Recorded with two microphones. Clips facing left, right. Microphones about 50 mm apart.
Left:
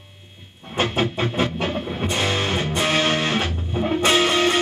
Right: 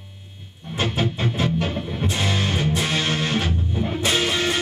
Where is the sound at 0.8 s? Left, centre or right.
Left.